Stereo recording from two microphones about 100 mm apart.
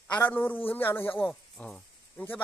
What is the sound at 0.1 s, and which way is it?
Speech, 15° left (ahead or behind).